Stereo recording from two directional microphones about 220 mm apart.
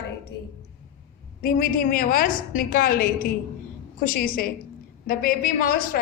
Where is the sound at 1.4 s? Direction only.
40° left (ahead or behind).